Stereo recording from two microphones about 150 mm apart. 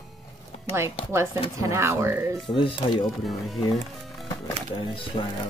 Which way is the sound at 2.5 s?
35° left (ahead or behind).